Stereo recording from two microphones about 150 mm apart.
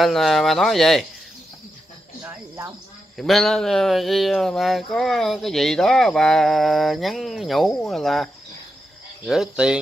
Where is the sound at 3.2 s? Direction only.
5° left (ahead or behind).